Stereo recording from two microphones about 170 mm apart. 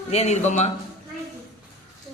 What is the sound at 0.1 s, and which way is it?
Speech, 40° left (ahead or behind).